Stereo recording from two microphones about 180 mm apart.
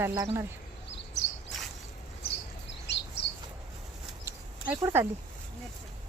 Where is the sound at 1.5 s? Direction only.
5° left (ahead or behind).